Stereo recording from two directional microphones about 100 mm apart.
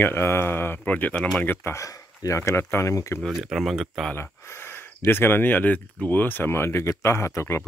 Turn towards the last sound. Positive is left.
turn(degrees=25)  # may be behind; listen again after turning